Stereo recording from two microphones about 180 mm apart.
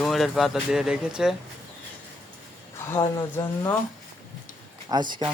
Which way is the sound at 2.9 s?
20° left (ahead or behind).